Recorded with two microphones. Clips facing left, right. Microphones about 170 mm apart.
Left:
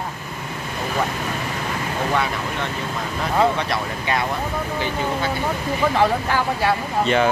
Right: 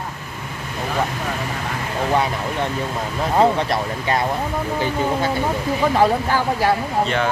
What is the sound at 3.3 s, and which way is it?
Speech, 35° right (ahead or behind).